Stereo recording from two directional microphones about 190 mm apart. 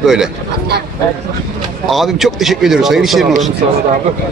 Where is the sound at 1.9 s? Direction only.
Centre (ahead or behind).